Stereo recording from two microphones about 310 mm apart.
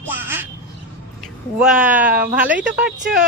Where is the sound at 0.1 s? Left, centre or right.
Centre.